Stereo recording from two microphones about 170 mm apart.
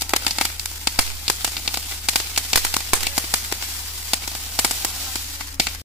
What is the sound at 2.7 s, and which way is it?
Firecracker, 10° right (ahead or behind).